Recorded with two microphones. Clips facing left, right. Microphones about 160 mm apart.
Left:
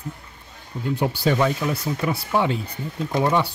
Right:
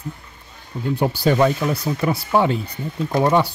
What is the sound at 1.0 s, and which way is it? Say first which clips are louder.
Speech: right 4 dB; 40° right (ahead or behind).